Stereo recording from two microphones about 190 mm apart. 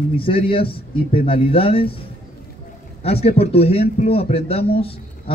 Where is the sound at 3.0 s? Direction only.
30° left (ahead or behind).